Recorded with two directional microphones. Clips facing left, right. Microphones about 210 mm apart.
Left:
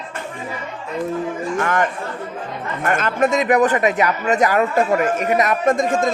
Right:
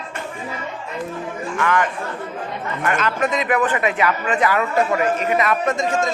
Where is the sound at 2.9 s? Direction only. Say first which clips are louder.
Left 4 dB; 50° left (ahead or behind).